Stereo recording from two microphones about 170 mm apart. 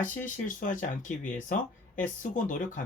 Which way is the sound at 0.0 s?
50° left (ahead or behind).